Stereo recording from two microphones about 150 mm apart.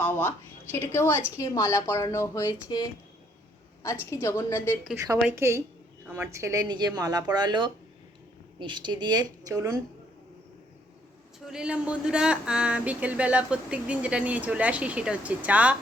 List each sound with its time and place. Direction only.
0.0 s a woman's voice: 15° left (ahead or behind)
4.1 s a woman's voice: 20° left (ahead or behind)
4.9 s speech: 20° right (ahead or behind)
11.4 s speech: 5° right (ahead or behind)